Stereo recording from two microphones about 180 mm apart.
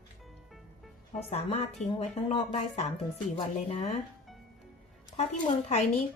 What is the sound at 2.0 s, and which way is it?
Speech, 35° left (ahead or behind).